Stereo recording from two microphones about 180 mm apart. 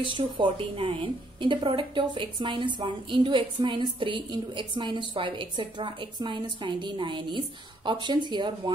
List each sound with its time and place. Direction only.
0.1 s a woman's voice: 30° right (ahead or behind)